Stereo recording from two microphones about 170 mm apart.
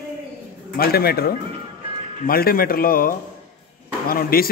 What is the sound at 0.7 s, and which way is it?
A man's voice, 65° left (ahead or behind).